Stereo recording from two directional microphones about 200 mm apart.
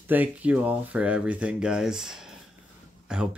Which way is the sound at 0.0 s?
10° right (ahead or behind).